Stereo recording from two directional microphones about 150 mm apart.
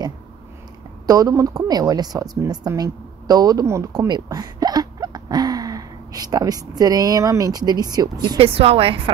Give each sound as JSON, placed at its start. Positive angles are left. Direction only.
{"t": 1.0, "sound": "a woman's voice", "side_deg": -25}
{"t": 8.4, "sound": "a woman's voice", "side_deg": -40}